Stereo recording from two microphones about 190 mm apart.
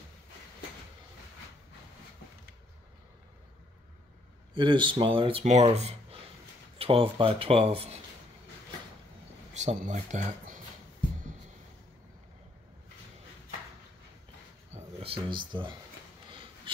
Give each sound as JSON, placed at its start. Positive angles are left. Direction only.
{"t": 4.6, "sound": "speech", "side_deg": -25}
{"t": 9.5, "sound": "speech", "side_deg": -35}
{"t": 14.7, "sound": "a sound", "side_deg": -30}